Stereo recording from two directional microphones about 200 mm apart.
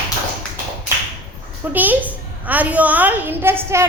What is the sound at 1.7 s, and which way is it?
A woman's voice, 10° right (ahead or behind).